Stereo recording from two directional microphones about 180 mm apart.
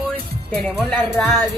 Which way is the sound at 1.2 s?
5° left (ahead or behind).